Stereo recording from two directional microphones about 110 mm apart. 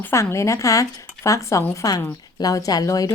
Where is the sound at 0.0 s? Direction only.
25° left (ahead or behind).